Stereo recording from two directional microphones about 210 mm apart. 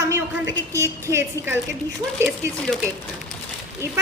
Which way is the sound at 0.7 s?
15° right (ahead or behind).